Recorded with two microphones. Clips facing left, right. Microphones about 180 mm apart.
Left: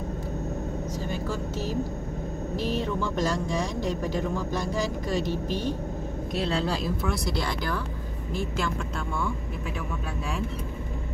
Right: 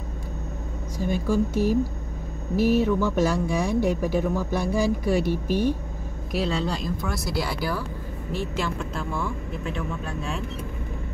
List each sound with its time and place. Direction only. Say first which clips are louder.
0.9 s speech: right 12 dB; 15° right (ahead or behind)